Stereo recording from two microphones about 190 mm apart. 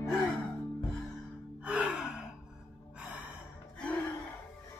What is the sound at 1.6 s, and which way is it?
Gasp, 5° right (ahead or behind).